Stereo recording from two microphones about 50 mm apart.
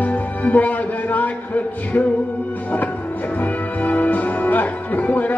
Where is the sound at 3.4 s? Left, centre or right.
Left.